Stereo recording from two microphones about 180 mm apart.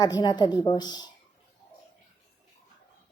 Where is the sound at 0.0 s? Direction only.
20° left (ahead or behind).